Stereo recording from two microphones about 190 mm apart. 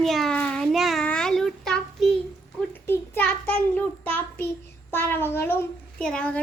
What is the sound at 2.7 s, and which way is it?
Child singing, 10° left (ahead or behind).